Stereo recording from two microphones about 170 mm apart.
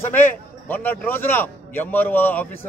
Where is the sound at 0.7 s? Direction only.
10° left (ahead or behind).